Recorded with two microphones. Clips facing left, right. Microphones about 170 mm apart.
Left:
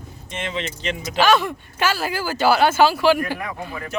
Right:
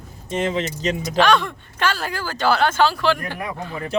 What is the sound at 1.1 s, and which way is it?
Speech, 5° left (ahead or behind).